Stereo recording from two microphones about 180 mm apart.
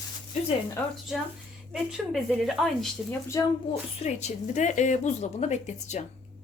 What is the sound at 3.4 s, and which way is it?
Speech, 20° left (ahead or behind).